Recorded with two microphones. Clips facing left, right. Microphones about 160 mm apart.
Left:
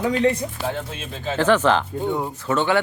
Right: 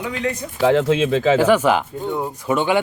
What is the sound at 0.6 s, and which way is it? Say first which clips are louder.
Speech: right 12 dB; 90° right.